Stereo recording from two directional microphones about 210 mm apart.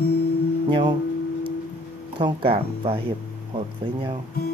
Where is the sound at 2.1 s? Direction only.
25° right (ahead or behind).